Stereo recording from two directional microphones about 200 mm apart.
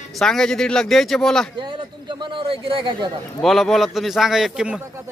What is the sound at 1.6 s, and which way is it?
A man's voice, 25° right (ahead or behind).